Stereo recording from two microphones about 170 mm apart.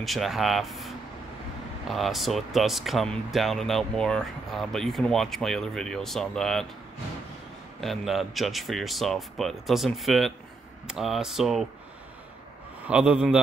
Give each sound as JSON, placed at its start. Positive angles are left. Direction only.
{"t": 0.0, "sound": "speech", "side_deg": 0}
{"t": 7.8, "sound": "speech", "side_deg": 0}
{"t": 12.8, "sound": "speech", "side_deg": -5}